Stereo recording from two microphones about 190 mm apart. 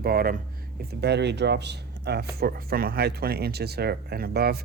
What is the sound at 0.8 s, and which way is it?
Speech, 60° right (ahead or behind).